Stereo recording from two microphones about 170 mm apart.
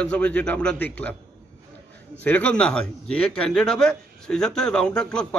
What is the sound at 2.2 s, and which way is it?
A man's voice, 10° left (ahead or behind).